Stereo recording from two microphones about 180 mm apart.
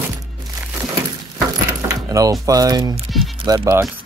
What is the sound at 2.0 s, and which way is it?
Speech, 20° right (ahead or behind).